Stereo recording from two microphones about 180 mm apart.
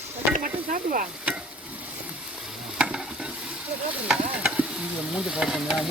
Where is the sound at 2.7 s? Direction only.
5° right (ahead or behind).